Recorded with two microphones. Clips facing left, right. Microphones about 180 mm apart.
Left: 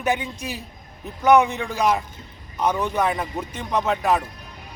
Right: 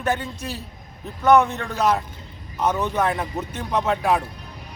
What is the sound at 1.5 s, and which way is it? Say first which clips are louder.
Speech: even; centre (ahead or behind).